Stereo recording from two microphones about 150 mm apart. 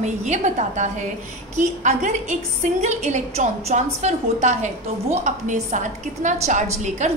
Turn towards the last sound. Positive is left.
turn(degrees=-50)  # may be behind; listen again after turning